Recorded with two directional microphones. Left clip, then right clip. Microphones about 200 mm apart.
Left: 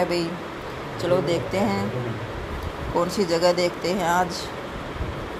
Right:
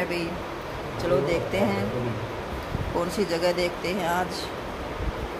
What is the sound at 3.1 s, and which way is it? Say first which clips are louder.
Speech: left 4 dB; 15° left (ahead or behind).